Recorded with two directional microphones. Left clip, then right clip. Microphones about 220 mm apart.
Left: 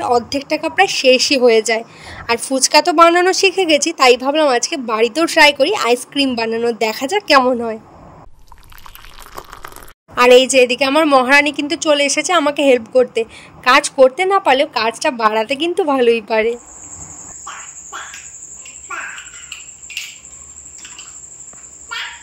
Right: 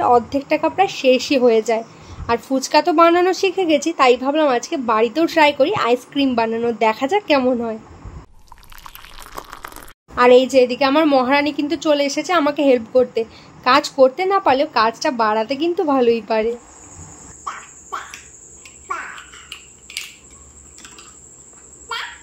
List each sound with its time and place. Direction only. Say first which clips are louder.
0.1 s a woman's voice: right 1 dB; 40° left (ahead or behind)
8.8 s a sound: even; centre (ahead or behind)
10.1 s a woman's voice: left 3 dB; 40° left (ahead or behind)